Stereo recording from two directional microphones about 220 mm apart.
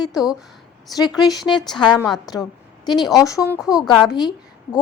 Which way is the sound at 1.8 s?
20° left (ahead or behind).